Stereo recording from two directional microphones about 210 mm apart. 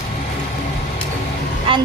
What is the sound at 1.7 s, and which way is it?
Music, 25° right (ahead or behind).